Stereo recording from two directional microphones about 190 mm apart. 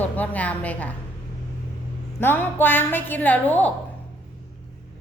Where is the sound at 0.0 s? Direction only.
10° left (ahead or behind).